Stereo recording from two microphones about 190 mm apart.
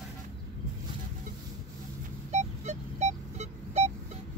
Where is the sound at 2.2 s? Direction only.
35° right (ahead or behind).